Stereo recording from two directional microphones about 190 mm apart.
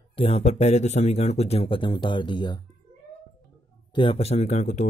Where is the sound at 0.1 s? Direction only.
30° left (ahead or behind).